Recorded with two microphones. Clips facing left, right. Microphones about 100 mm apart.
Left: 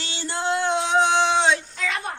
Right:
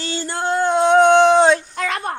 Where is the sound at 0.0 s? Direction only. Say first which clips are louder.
Right 4 dB; 45° right (ahead or behind).